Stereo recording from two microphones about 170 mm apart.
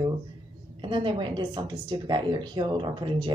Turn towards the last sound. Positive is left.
turn(degrees=-30)  # may be behind; listen again after turning